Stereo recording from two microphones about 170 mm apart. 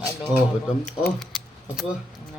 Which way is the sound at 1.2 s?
Centre (ahead or behind).